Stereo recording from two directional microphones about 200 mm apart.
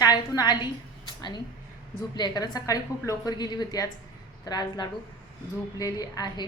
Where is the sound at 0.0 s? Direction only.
20° left (ahead or behind).